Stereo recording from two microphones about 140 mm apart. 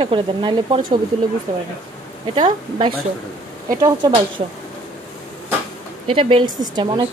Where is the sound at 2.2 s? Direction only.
35° right (ahead or behind).